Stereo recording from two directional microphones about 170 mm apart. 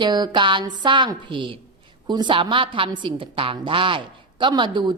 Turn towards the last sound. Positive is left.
turn(degrees=-25)  # may be behind; listen again after turning